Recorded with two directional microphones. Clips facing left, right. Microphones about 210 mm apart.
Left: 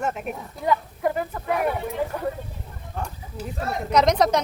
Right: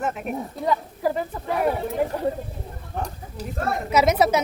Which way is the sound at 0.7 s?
30° right (ahead or behind).